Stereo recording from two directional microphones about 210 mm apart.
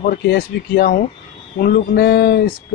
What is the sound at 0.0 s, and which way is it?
Speech, 50° left (ahead or behind).